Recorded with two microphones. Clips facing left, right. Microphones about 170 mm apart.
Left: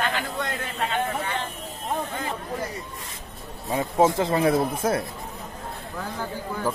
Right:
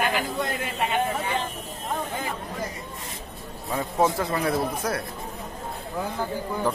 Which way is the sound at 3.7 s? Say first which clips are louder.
Left 3 dB; 20° left (ahead or behind).